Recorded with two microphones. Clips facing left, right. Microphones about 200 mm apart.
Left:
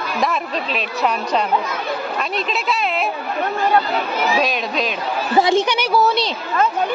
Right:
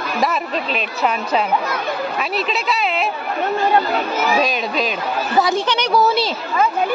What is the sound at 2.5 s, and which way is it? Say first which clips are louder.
Speech: right 1 dB; centre (ahead or behind).